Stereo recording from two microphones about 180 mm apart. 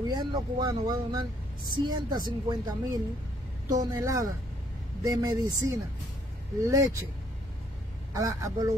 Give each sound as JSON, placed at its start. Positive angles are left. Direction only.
{"t": 0.1, "sound": "a man's voice", "side_deg": -25}
{"t": 8.1, "sound": "a man's voice", "side_deg": -20}